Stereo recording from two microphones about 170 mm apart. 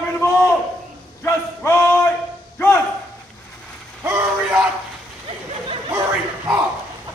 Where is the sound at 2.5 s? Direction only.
15° left (ahead or behind).